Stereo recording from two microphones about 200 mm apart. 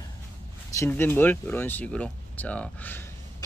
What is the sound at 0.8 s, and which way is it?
Speech, 10° left (ahead or behind).